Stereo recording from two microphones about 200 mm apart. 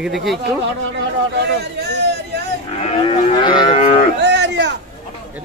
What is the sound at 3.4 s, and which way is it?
Livestock, 25° left (ahead or behind).